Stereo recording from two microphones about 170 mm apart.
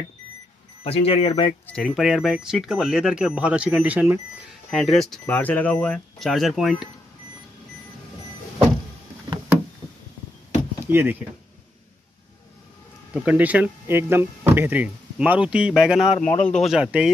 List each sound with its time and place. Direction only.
0.8 s speech: 35° left (ahead or behind)
1.7 s speech: centre (ahead or behind)
4.6 s speech: centre (ahead or behind)
10.9 s speech: 10° right (ahead or behind)
13.1 s speech: 10° right (ahead or behind)